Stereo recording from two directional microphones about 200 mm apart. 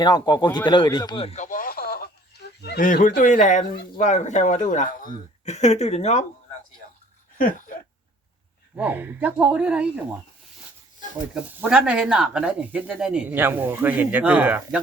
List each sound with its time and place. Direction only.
0.0 s speech: 20° left (ahead or behind)
7.3 s a sound: 45° left (ahead or behind)
8.7 s speech: 10° right (ahead or behind)
11.7 s speech: 5° right (ahead or behind)